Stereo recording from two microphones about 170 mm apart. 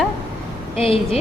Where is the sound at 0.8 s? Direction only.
35° left (ahead or behind).